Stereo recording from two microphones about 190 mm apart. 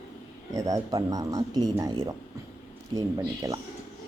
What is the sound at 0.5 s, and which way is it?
Speech, 20° right (ahead or behind).